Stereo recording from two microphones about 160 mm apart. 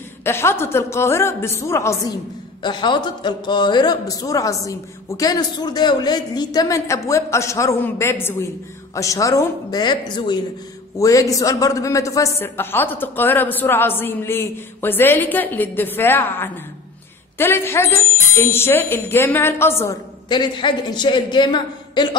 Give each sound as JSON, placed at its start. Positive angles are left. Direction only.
{"t": 0.2, "sound": "a woman's voice", "side_deg": 15}
{"t": 2.6, "sound": "a man's voice", "side_deg": 30}
{"t": 20.2, "sound": "a man's voice", "side_deg": 30}